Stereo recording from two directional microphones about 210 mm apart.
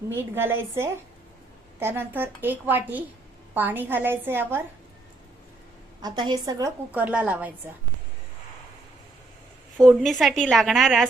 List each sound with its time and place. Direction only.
0.3 s a woman's voice: 10° right (ahead or behind)
6.0 s a woman's voice: 20° right (ahead or behind)
9.8 s a woman's voice: centre (ahead or behind)